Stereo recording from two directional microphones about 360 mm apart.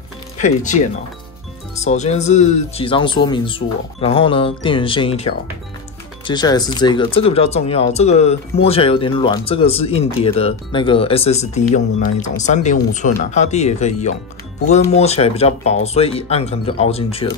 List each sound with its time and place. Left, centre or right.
1.8 s speech: centre